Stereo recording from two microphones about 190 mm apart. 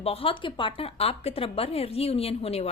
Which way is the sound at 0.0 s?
30° left (ahead or behind).